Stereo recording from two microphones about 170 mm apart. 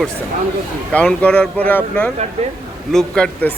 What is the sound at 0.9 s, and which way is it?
A man's voice, 5° left (ahead or behind).